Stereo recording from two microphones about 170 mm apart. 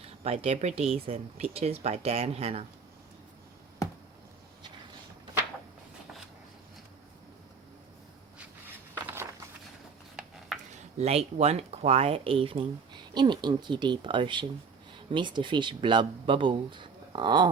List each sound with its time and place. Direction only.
0.3 s speech: 35° right (ahead or behind)
11.0 s speech: 40° right (ahead or behind)